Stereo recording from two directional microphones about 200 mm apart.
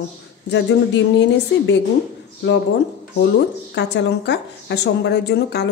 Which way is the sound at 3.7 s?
60° left (ahead or behind).